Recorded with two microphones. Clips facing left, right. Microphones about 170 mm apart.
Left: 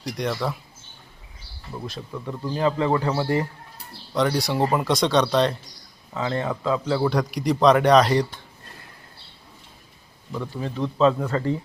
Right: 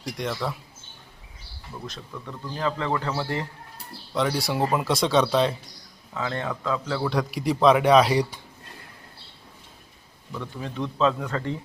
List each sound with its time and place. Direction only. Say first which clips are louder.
0.0 s speech: left 3 dB; centre (ahead or behind)
2.2 s speech: left 5 dB; 25° left (ahead or behind)
3.2 s speech: left 6 dB; 10° left (ahead or behind)
6.1 s speech: left 4 dB; 15° left (ahead or behind)
7.1 s speech: left 2 dB; centre (ahead or behind)
10.6 s speech: left 4 dB; centre (ahead or behind)